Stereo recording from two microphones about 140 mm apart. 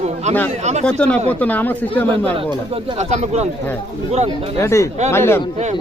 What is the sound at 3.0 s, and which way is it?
Speech, 55° right (ahead or behind).